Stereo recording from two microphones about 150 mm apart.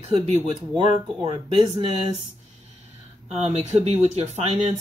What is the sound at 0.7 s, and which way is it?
Speech, 30° right (ahead or behind).